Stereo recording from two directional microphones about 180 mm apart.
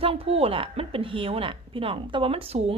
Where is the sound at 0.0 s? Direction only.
30° right (ahead or behind).